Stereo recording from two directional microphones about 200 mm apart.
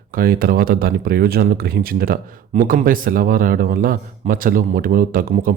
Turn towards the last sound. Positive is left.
turn(degrees=-45)  # may be behind; listen again after turning